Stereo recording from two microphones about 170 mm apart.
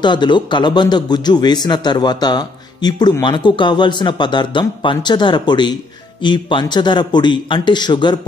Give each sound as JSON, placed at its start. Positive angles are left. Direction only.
{"t": 0.0, "sound": "a man's voice", "side_deg": 25}